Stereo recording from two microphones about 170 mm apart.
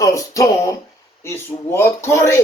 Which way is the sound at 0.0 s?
20° left (ahead or behind).